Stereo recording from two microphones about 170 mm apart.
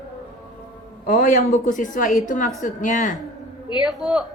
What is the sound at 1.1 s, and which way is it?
A man's voice, 55° left (ahead or behind).